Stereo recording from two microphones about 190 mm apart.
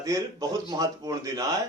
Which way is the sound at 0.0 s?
20° right (ahead or behind).